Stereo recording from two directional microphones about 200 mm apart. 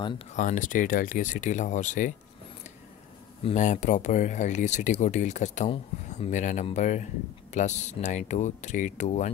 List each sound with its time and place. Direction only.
0.3 s speech: 40° left (ahead or behind)
3.4 s speech: 35° left (ahead or behind)